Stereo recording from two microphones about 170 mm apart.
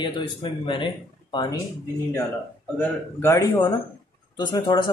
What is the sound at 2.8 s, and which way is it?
Speech, 15° left (ahead or behind).